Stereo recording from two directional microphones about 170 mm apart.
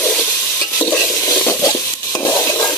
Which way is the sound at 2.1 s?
20° left (ahead or behind).